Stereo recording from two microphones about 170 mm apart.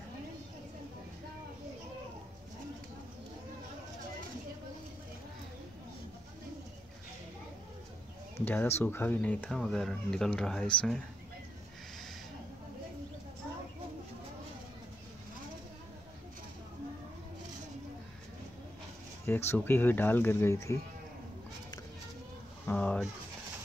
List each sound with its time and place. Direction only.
8.4 s speech: 10° left (ahead or behind)
19.2 s speech: 15° left (ahead or behind)
22.7 s speech: 5° left (ahead or behind)